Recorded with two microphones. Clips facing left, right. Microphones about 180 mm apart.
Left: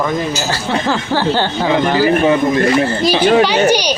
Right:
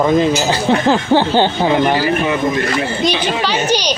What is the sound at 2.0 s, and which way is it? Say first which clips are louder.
Speech: left 4 dB; 25° left (ahead or behind).